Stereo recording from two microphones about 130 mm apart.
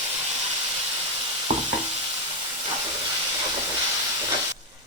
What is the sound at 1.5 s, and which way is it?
Stir, 60° right (ahead or behind).